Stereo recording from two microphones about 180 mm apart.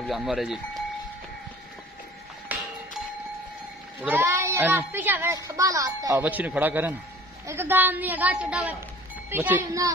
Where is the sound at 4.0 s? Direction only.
15° right (ahead or behind).